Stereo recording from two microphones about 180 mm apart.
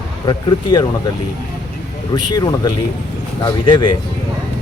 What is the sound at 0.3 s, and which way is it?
Speech, 25° left (ahead or behind).